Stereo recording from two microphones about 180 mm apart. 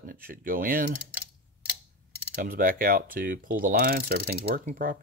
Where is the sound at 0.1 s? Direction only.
50° right (ahead or behind).